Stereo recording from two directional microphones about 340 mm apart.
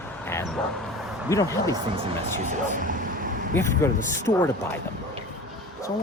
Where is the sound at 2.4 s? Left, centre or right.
Right.